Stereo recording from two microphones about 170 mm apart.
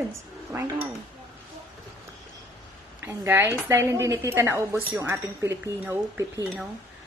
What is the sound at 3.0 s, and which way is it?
A woman's voice, 15° right (ahead or behind).